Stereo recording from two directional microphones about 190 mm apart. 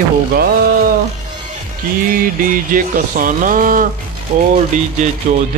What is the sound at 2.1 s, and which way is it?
Speech, 50° right (ahead or behind).